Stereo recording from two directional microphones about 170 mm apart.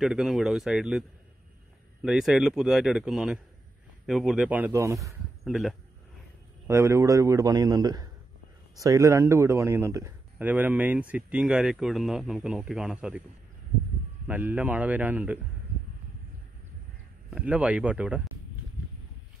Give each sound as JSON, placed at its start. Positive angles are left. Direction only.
{"t": 0.0, "sound": "a man's voice", "side_deg": 0}
{"t": 5.4, "sound": "speech", "side_deg": 0}
{"t": 6.7, "sound": "a man's voice", "side_deg": -15}
{"t": 14.2, "sound": "a man's voice", "side_deg": -10}
{"t": 17.3, "sound": "a man's voice", "side_deg": -5}